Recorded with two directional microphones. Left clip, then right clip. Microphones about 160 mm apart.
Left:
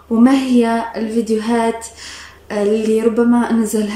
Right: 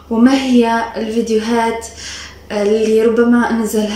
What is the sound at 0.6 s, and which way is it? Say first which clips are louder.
Speech: right 2 dB; 30° left (ahead or behind).